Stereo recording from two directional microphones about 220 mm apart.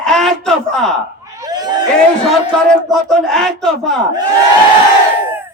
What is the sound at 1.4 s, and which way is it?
Crowd, 15° right (ahead or behind).